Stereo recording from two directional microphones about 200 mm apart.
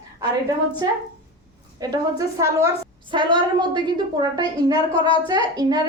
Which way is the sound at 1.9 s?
15° right (ahead or behind).